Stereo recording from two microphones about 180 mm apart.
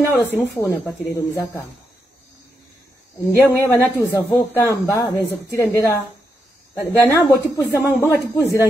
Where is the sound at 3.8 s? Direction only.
10° left (ahead or behind).